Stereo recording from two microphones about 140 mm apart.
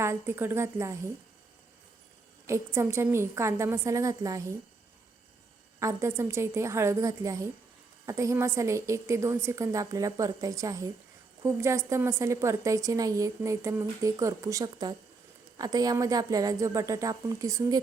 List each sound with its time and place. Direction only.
0.0 s a woman's voice: 15° right (ahead or behind)
2.5 s a woman's voice: 20° right (ahead or behind)
5.8 s a woman's voice: 20° right (ahead or behind)